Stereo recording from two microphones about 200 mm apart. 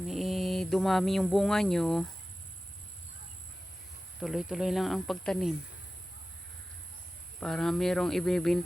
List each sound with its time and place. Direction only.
0.1 s speech: centre (ahead or behind)
4.2 s speech: centre (ahead or behind)
7.3 s speech: 5° left (ahead or behind)